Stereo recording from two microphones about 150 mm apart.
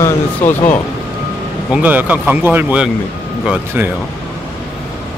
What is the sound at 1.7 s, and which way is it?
Speech, 10° right (ahead or behind).